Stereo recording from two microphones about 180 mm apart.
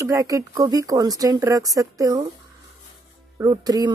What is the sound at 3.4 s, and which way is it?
Speech, 20° right (ahead or behind).